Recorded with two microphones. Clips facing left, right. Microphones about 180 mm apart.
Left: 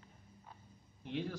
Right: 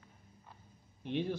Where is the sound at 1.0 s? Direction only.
25° right (ahead or behind).